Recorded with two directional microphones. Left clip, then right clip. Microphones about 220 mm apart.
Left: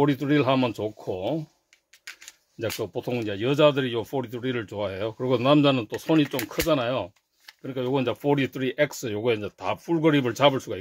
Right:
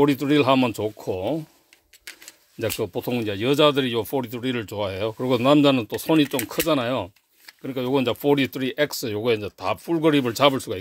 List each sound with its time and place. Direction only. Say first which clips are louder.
0.0 s speech: right 3 dB; 30° right (ahead or behind)
2.6 s speech: right 3 dB; 30° right (ahead or behind)